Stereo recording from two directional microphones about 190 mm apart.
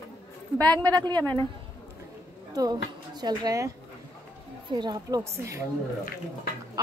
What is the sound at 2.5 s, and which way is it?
Speech, 20° right (ahead or behind).